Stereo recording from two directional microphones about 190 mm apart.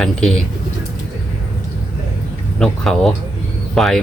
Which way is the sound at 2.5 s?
5° left (ahead or behind).